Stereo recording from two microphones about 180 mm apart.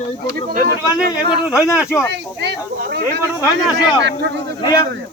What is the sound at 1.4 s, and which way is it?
Speech, 5° right (ahead or behind).